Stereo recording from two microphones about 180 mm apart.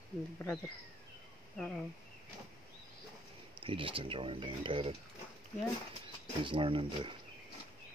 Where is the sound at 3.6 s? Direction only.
30° right (ahead or behind).